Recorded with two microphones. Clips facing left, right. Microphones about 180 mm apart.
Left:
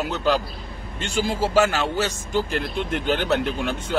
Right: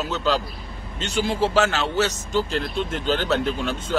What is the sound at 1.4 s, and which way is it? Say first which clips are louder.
Speech: left 1 dB; 10° left (ahead or behind).